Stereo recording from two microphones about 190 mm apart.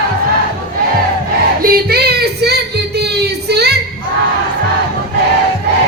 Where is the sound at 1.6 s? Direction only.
50° right (ahead or behind).